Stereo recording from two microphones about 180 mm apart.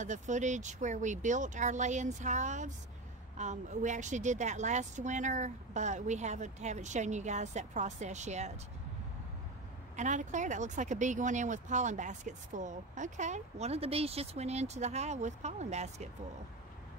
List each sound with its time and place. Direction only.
0.0 s speech: 40° right (ahead or behind)
9.9 s speech: 40° right (ahead or behind)